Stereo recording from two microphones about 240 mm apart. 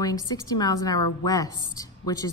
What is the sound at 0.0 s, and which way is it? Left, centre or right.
A woman's voice, centre.